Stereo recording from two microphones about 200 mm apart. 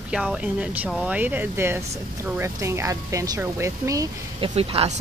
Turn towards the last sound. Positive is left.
turn(degrees=-30)  # may be behind; listen again after turning